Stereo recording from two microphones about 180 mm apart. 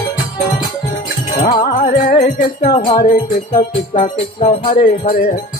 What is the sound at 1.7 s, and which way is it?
Music, 50° left (ahead or behind).